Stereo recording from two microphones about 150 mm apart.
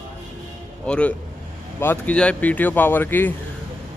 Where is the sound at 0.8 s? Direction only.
5° left (ahead or behind).